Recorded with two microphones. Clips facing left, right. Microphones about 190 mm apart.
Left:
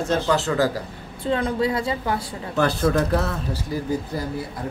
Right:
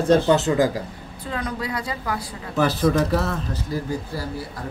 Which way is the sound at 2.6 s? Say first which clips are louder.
Right 1 dB; centre (ahead or behind).